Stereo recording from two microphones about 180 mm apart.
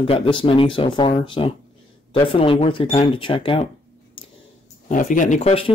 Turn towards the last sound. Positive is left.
turn(degrees=35)  # may be behind; listen again after turning